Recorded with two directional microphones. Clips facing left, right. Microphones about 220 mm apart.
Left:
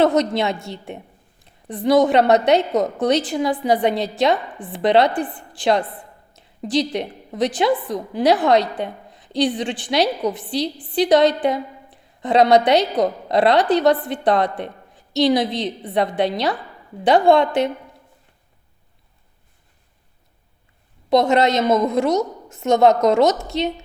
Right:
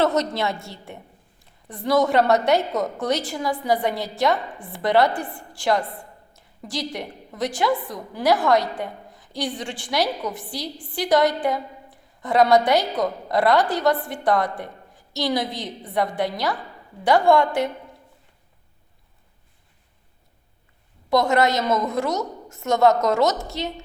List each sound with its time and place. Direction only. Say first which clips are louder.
0.0 s a woman's voice: left 4 dB; 15° left (ahead or behind)
6.3 s a sound: left 11 dB; 20° left (ahead or behind)
7.3 s a woman's voice: left 4 dB; 20° left (ahead or behind)
21.1 s a woman's voice: left 3 dB; 20° left (ahead or behind)